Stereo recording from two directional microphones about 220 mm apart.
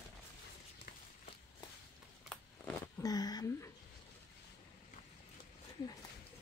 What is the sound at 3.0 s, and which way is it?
Speech, 15° left (ahead or behind).